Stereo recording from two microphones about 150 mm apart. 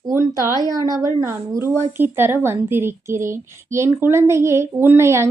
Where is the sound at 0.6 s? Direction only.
25° right (ahead or behind).